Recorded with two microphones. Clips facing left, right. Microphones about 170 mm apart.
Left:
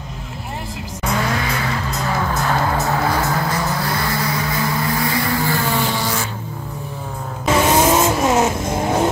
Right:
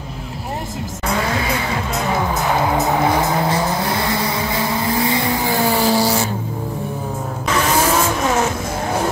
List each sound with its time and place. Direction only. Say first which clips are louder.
2.0 s music: right 1 dB; 15° right (ahead or behind)
3.4 s vehicle: right 3 dB; 25° right (ahead or behind)
5.7 s vehicle: right 5 dB; 35° right (ahead or behind)
7.5 s vehicle: left 2 dB; 25° left (ahead or behind)